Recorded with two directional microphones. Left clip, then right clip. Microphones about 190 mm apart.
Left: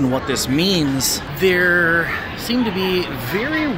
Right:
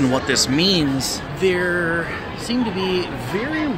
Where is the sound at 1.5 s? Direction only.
15° left (ahead or behind).